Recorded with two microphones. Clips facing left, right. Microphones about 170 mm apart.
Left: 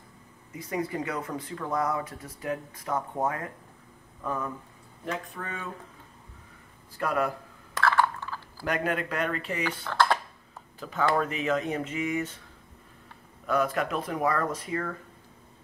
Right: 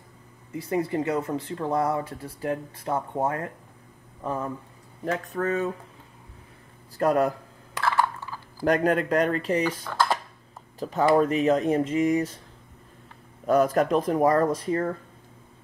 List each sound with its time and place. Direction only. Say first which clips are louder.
0.6 s speech: right 5 dB; 30° right (ahead or behind)
5.0 s speech: right 8 dB; 45° right (ahead or behind)
7.0 s speech: right 6 dB; 40° right (ahead or behind)
8.2 s typing: right 1 dB; 10° right (ahead or behind)
8.6 s speech: right 7 dB; 40° right (ahead or behind)
9.9 s speech: left 1 dB; 5° right (ahead or behind)
10.8 s speech: right 6 dB; 40° right (ahead or behind)
13.5 s speech: right 6 dB; 40° right (ahead or behind)